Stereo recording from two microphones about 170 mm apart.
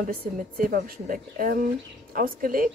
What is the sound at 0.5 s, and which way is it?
Speech, 55° right (ahead or behind).